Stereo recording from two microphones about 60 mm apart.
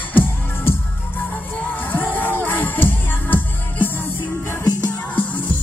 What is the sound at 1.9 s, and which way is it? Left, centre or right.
Music, left.